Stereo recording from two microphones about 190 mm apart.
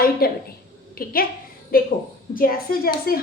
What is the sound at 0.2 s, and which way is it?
Speech, 55° left (ahead or behind).